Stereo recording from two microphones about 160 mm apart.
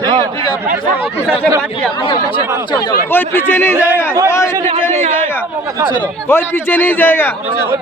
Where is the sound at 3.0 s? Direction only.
15° left (ahead or behind).